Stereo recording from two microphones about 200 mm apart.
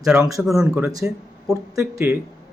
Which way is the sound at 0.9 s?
15° right (ahead or behind).